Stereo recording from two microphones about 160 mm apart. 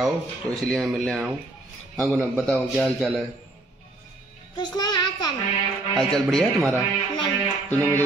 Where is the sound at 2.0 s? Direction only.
10° right (ahead or behind).